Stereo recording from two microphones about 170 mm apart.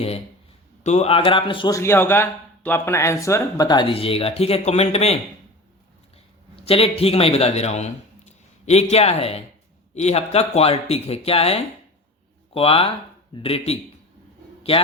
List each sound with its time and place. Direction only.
0.9 s a man's voice: 35° left (ahead or behind)
6.7 s a man's voice: 35° left (ahead or behind)